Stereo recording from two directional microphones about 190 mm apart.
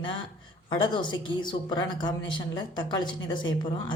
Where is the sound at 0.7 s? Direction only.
25° left (ahead or behind).